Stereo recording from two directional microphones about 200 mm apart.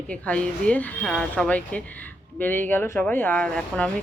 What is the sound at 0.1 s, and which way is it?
Speech, 5° left (ahead or behind).